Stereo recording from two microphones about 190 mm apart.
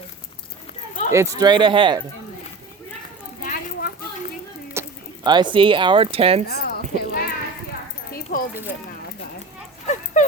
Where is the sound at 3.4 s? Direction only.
45° left (ahead or behind).